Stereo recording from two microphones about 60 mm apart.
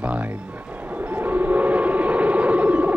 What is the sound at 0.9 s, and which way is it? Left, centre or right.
Whale vocalization, right.